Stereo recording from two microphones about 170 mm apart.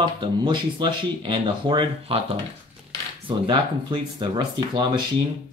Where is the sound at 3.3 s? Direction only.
25° right (ahead or behind).